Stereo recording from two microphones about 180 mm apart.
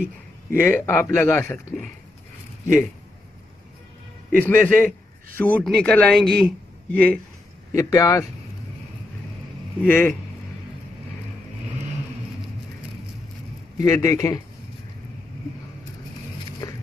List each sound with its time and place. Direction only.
0.5 s a man's voice: 10° left (ahead or behind)
4.4 s a man's voice: 10° left (ahead or behind)
9.8 s a man's voice: 10° left (ahead or behind)
13.7 s speech: 20° left (ahead or behind)
16.6 s a sound: 20° left (ahead or behind)